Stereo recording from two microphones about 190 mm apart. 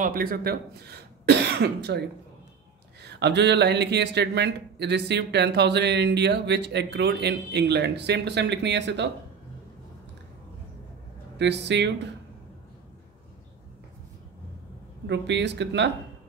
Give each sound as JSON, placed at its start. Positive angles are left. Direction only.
{"t": 0.0, "sound": "speech", "side_deg": -50}
{"t": 11.3, "sound": "speech", "side_deg": -65}
{"t": 15.0, "sound": "speech", "side_deg": -65}